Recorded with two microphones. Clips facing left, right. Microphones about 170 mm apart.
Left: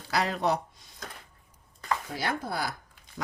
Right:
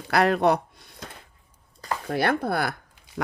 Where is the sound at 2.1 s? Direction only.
60° right (ahead or behind).